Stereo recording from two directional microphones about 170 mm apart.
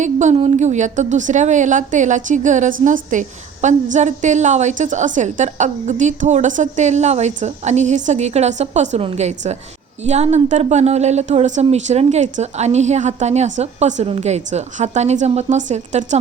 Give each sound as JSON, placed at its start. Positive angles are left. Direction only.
{"t": 0.0, "sound": "a woman's voice", "side_deg": -45}